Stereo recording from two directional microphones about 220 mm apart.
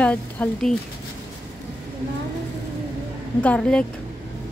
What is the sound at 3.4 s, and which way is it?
Speech, 5° left (ahead or behind).